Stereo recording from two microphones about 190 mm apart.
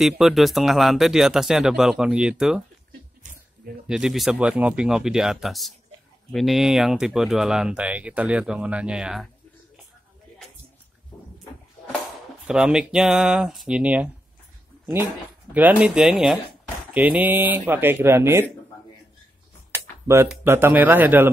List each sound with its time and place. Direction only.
0.0 s speech: centre (ahead or behind)
3.8 s speech: 5° right (ahead or behind)
12.4 s speech: 5° right (ahead or behind)
15.5 s speech: 10° right (ahead or behind)
19.7 s speech: 15° right (ahead or behind)